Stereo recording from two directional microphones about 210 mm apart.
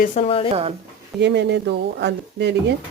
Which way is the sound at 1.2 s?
55° right (ahead or behind).